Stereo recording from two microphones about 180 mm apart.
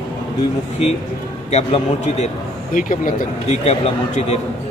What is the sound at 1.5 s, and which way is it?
A man's voice, 35° left (ahead or behind).